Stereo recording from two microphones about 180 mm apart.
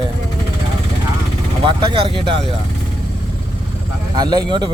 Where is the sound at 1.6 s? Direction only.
30° right (ahead or behind).